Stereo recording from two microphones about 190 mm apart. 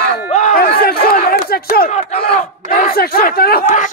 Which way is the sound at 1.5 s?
55° left (ahead or behind).